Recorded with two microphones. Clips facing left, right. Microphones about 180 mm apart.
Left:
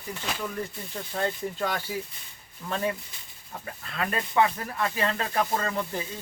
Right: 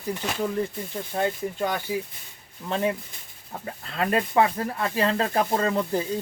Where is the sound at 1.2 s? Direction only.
15° right (ahead or behind).